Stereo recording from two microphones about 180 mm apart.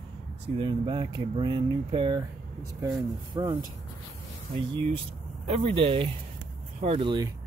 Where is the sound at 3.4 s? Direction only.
20° right (ahead or behind).